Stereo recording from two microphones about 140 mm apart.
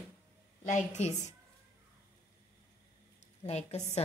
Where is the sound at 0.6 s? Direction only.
55° left (ahead or behind).